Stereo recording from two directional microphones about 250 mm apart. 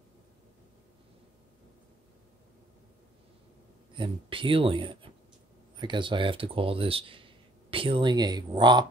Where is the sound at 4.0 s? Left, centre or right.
Right.